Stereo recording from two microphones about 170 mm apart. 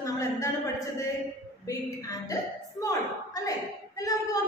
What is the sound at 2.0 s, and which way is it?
Speech, 20° left (ahead or behind).